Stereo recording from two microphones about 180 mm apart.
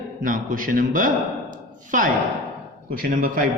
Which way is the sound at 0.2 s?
50° right (ahead or behind).